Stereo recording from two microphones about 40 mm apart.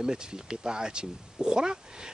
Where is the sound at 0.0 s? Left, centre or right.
Centre.